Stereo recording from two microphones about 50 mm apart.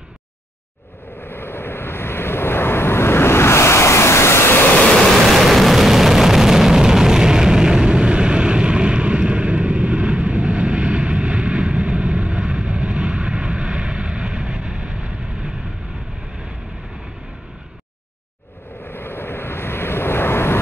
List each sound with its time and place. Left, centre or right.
1.1 s vehicle: left
5.2 s vehicle: centre; by 15.5 s right
18.9 s vehicle: left